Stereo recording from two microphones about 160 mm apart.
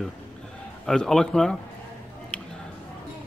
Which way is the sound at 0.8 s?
5° left (ahead or behind).